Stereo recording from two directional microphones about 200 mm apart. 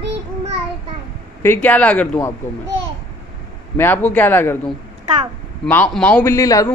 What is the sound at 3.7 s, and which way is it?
Speech, 10° left (ahead or behind).